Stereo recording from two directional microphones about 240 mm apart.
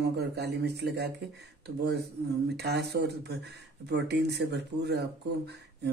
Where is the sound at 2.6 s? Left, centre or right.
Right.